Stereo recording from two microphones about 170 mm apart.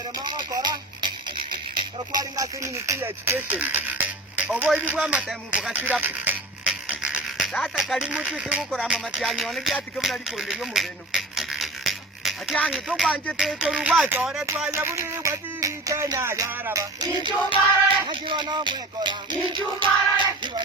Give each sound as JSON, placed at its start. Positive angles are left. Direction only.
{"t": 0.2, "sound": "a sound", "side_deg": -25}
{"t": 2.1, "sound": "speech", "side_deg": -20}
{"t": 14.7, "sound": "music", "side_deg": -15}
{"t": 17.0, "sound": "child singing", "side_deg": -25}